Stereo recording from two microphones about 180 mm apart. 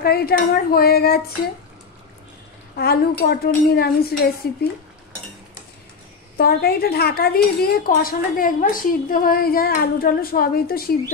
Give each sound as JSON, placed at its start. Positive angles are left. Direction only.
{"t": 0.0, "sound": "speech", "side_deg": 60}
{"t": 2.7, "sound": "speech", "side_deg": 60}
{"t": 6.3, "sound": "speech", "side_deg": 60}